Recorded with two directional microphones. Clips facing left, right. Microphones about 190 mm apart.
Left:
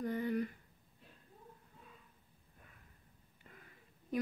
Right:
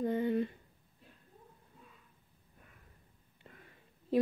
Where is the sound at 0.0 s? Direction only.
25° right (ahead or behind).